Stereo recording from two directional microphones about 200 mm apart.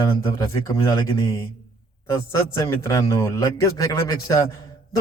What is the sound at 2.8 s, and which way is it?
A man's voice, 15° left (ahead or behind).